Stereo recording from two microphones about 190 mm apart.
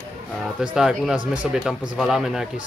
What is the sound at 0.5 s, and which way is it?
Speech, centre (ahead or behind).